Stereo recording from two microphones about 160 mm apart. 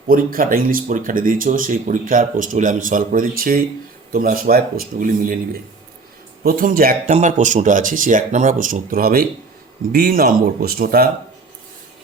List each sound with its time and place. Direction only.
0.1 s speech: 60° right (ahead or behind)
6.4 s speech: 60° right (ahead or behind)
7.1 s speech: 50° right (ahead or behind); by 11.1 s 70° right (ahead or behind)